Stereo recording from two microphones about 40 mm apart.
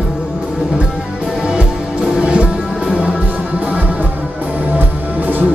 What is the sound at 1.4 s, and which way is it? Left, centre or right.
Music, right.